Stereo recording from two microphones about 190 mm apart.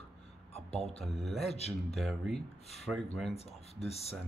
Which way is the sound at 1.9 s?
Centre (ahead or behind).